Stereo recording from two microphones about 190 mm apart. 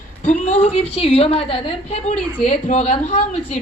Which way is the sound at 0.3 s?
35° left (ahead or behind).